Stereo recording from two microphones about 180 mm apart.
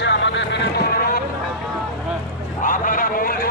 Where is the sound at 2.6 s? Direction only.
50° left (ahead or behind).